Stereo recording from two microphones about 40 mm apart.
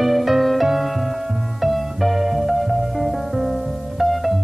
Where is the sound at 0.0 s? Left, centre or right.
Centre.